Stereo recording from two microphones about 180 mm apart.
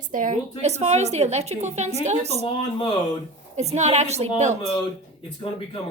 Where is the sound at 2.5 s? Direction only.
30° left (ahead or behind).